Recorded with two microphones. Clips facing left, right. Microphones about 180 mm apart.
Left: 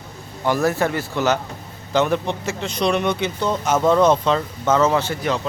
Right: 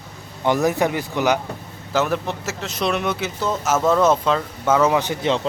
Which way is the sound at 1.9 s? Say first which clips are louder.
Left 2 dB; 5° right (ahead or behind).